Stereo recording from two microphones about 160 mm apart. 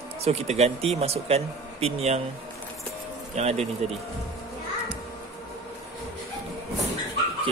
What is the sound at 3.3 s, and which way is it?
Speech, 40° right (ahead or behind).